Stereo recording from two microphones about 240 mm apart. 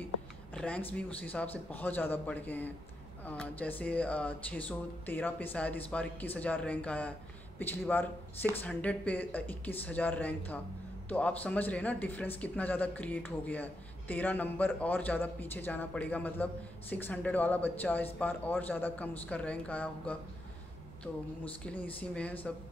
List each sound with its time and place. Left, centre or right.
0.6 s a man's voice: centre
21.8 s speech: centre